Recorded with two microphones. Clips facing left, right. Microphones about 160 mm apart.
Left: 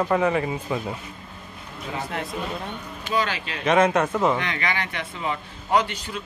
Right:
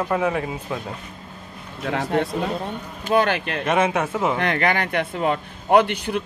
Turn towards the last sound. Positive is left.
turn(degrees=-65)  # may be behind; listen again after turning